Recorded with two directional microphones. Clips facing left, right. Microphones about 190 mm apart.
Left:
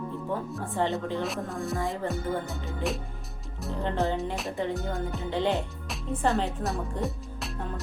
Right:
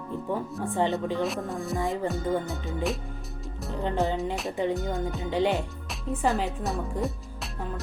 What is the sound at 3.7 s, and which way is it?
Music, 20° right (ahead or behind).